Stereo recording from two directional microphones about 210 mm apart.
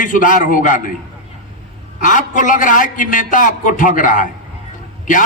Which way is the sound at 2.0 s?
40° left (ahead or behind).